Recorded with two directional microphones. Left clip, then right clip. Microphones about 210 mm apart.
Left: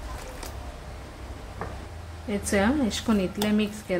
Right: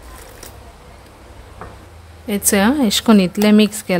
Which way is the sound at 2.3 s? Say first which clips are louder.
Right 8 dB; 55° right (ahead or behind).